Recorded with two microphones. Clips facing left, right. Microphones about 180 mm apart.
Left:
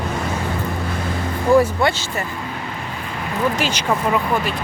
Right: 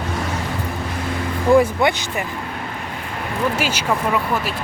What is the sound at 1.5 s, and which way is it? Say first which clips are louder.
Speech: even; 15° right (ahead or behind).